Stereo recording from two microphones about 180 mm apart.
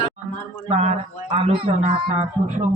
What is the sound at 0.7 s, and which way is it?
Speech, 40° right (ahead or behind).